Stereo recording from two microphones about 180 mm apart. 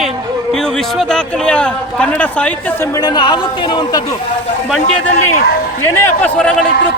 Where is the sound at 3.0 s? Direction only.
25° left (ahead or behind).